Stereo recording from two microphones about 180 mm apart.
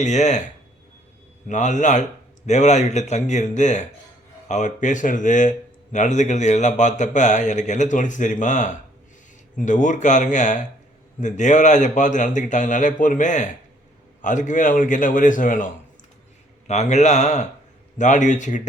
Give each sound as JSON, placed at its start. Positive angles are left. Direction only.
{"t": 0.0, "sound": "a man's voice", "side_deg": 40}
{"t": 1.5, "sound": "a man's voice", "side_deg": 45}
{"t": 16.6, "sound": "a man's voice", "side_deg": 40}